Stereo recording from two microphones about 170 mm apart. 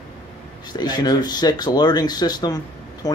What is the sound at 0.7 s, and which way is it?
Speech, 25° left (ahead or behind).